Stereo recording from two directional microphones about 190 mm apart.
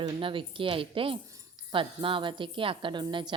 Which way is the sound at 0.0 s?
25° right (ahead or behind).